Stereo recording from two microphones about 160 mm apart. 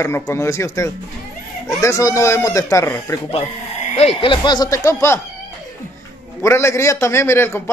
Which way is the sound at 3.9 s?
40° left (ahead or behind).